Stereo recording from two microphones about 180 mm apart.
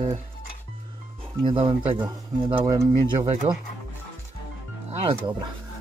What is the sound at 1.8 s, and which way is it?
Speech, 10° right (ahead or behind).